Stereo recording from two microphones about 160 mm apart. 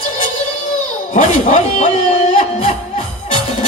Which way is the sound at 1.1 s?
45° left (ahead or behind).